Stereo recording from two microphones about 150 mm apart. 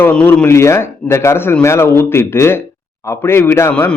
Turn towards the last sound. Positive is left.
turn(degrees=15)  # may be behind; listen again after turning